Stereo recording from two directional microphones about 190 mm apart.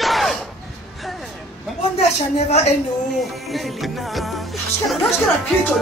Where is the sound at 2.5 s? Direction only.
35° left (ahead or behind).